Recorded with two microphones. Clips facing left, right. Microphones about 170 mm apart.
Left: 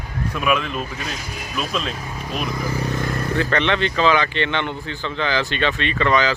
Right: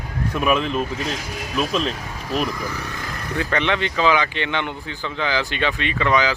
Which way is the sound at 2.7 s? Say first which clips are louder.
Left 7 dB; 30° left (ahead or behind).